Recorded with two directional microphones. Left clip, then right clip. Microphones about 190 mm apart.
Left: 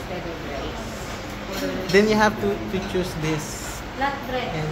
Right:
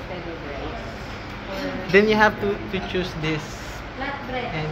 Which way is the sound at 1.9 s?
Centre (ahead or behind).